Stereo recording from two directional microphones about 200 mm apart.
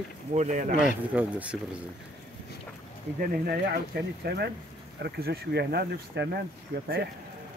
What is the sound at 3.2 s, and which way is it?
Speech, 50° right (ahead or behind).